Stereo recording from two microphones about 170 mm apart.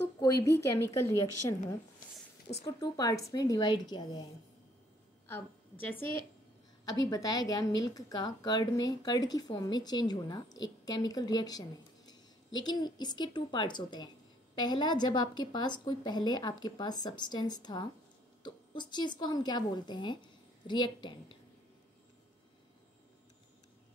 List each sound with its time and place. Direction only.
0.0 s a woman's voice: 20° left (ahead or behind)
5.3 s a woman's voice: 10° left (ahead or behind)
12.6 s a woman's voice: 25° left (ahead or behind)